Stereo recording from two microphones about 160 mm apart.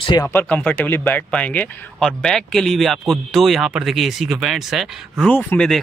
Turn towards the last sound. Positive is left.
turn(degrees=5)  # may be behind; listen again after turning